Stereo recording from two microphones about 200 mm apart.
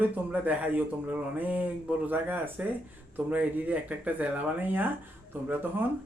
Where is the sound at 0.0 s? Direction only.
10° right (ahead or behind).